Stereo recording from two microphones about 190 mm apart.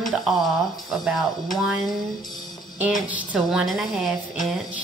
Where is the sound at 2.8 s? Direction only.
10° right (ahead or behind).